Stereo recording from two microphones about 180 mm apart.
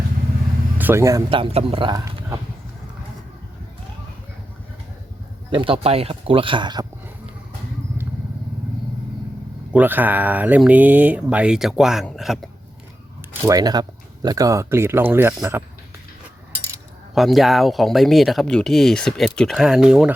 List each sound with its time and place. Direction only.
0.8 s speech: 15° right (ahead or behind)
1.3 s speech: 30° right (ahead or behind)
1.9 s a sound: 20° right (ahead or behind)
5.5 s speech: 30° right (ahead or behind)
9.7 s speech: 10° right (ahead or behind)
13.4 s speech: 20° right (ahead or behind)
17.2 s speech: centre (ahead or behind)